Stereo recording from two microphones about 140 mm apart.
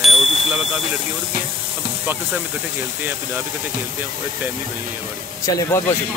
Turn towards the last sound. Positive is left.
turn(degrees=20)  # may be behind; listen again after turning